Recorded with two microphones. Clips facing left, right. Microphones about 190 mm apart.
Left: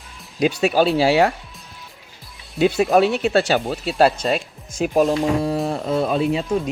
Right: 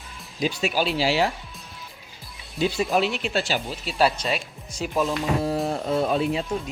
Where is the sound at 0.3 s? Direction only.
60° left (ahead or behind).